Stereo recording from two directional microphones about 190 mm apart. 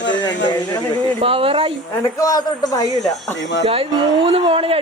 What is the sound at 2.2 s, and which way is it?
Speech, 20° left (ahead or behind).